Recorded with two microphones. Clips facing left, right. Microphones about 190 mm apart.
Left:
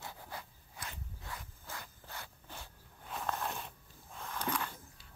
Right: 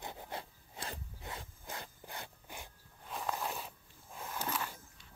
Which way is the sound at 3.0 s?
Centre (ahead or behind).